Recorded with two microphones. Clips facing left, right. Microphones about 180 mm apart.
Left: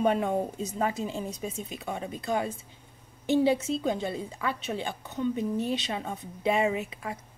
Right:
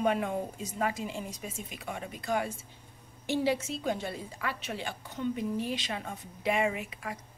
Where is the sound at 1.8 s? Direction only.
25° left (ahead or behind).